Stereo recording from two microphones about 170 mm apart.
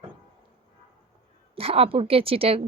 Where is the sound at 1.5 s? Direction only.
35° right (ahead or behind).